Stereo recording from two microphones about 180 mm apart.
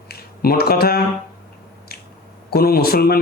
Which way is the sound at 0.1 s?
60° left (ahead or behind).